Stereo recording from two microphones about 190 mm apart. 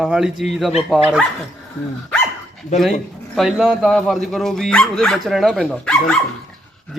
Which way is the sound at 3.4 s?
Centre (ahead or behind).